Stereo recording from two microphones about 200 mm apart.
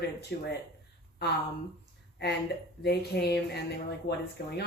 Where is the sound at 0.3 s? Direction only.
55° left (ahead or behind).